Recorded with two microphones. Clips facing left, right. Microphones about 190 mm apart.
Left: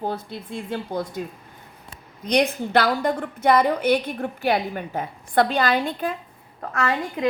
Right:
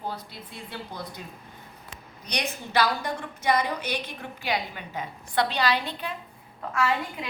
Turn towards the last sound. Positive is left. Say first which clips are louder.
# left 3 dB
turn(degrees=50)  # may be behind; listen again after turning